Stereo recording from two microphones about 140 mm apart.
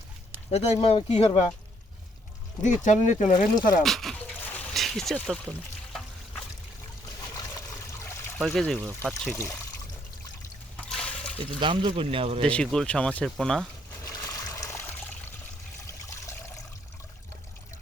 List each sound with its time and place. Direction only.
0.5 s speech: 50° left (ahead or behind)
2.6 s speech: 60° left (ahead or behind)
3.8 s speech: centre (ahead or behind)
4.5 s a sound: 5° left (ahead or behind)
8.4 s speech: centre (ahead or behind)
8.8 s speech: 20° right (ahead or behind)
9.3 s speech: 20° left (ahead or behind)
10.8 s a sound: 5° left (ahead or behind)
11.6 s speech: 35° right (ahead or behind)
12.5 s speech: 5° left (ahead or behind)
14.0 s water: 25° left (ahead or behind)